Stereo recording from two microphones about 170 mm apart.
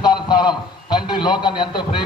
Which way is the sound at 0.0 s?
25° left (ahead or behind).